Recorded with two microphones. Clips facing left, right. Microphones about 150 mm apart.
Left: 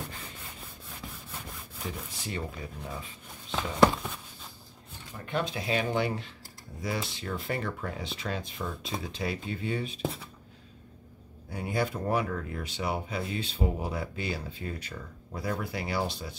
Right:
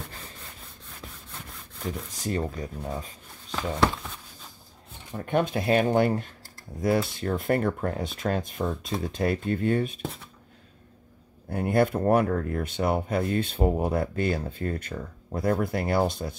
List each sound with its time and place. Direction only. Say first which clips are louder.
1.8 s speech: right 5 dB; 5° left (ahead or behind)
2.2 s speech: right 8 dB; 40° right (ahead or behind)
5.2 s speech: right 7 dB; 50° right (ahead or behind)
11.5 s speech: right 8 dB; 55° right (ahead or behind)